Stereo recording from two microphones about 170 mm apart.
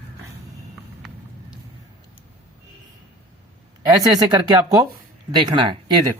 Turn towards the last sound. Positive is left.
turn(degrees=-25)  # may be behind; listen again after turning